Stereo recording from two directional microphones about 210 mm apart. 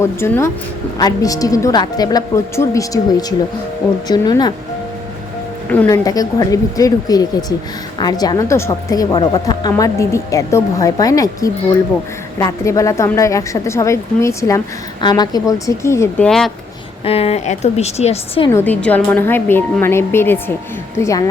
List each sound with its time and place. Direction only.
0.0 s a woman's voice: 10° left (ahead or behind)
5.6 s a woman's voice: 10° left (ahead or behind)
17.0 s a woman's voice: 30° left (ahead or behind)
18.5 s a woman's voice: 10° left (ahead or behind)